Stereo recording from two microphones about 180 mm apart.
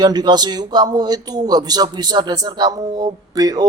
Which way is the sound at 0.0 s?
25° right (ahead or behind).